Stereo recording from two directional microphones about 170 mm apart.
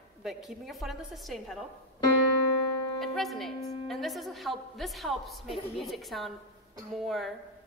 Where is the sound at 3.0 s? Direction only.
Centre (ahead or behind).